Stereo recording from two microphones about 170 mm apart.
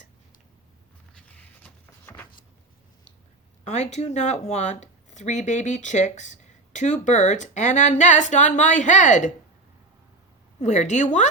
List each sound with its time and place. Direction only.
1.1 s a sound: 10° left (ahead or behind)
3.6 s speech: 40° left (ahead or behind)
10.6 s speech: 45° left (ahead or behind)